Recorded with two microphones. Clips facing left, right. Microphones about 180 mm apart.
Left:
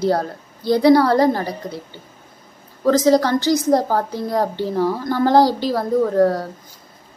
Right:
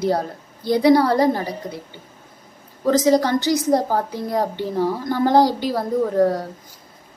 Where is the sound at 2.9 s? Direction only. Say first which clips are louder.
Left 2 dB; 15° right (ahead or behind).